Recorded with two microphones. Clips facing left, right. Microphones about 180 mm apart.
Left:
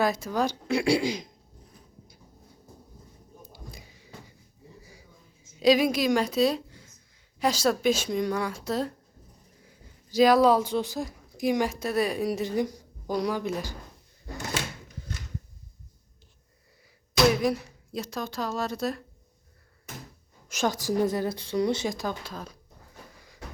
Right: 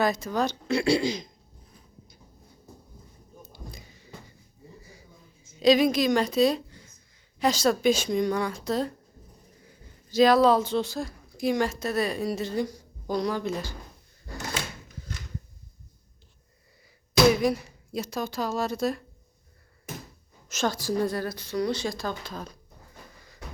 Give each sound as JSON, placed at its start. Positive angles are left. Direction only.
{"t": 0.0, "sound": "speech", "side_deg": 5}
{"t": 3.5, "sound": "basketball bounce", "side_deg": 10}
{"t": 5.5, "sound": "a woman's voice", "side_deg": 10}
{"t": 17.4, "sound": "a woman's voice", "side_deg": 0}
{"t": 20.5, "sound": "a woman's voice", "side_deg": 15}